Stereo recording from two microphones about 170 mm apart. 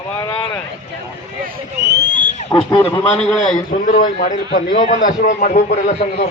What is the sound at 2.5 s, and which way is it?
Speech, 20° left (ahead or behind).